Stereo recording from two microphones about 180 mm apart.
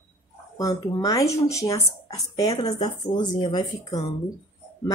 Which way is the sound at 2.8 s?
25° left (ahead or behind).